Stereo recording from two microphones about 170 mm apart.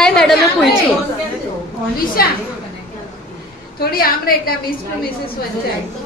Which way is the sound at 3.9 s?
60° left (ahead or behind).